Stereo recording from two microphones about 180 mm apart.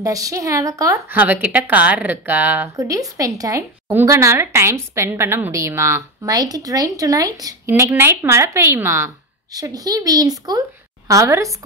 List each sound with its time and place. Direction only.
0.0 s a woman's voice: 20° right (ahead or behind)